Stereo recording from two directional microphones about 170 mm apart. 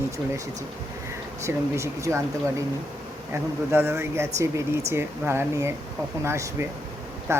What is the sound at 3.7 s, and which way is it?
Speech, 15° right (ahead or behind).